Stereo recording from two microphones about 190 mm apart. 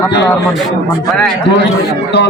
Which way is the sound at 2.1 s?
60° left (ahead or behind).